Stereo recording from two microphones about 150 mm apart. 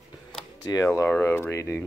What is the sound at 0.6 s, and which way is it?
Speech, 20° left (ahead or behind).